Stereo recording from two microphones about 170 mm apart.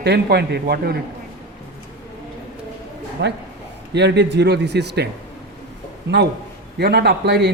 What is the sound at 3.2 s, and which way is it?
A man's voice, 90° right.